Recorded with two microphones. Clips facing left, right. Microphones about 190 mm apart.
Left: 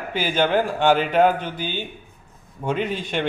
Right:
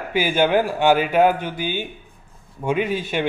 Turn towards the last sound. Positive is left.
turn(degrees=-5)  # may be behind; listen again after turning